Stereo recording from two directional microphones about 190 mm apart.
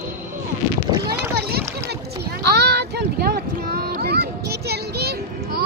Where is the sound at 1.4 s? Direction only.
55° right (ahead or behind).